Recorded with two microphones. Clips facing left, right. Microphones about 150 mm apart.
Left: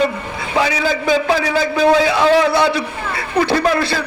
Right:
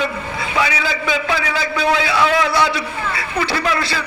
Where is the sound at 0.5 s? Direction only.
40° left (ahead or behind).